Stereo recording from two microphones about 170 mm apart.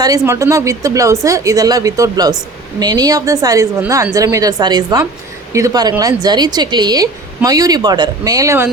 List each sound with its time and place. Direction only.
0.0 s a woman's voice: 20° right (ahead or behind)